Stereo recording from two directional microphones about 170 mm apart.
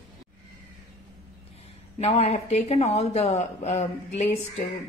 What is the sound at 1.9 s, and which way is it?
A woman's voice, 40° left (ahead or behind).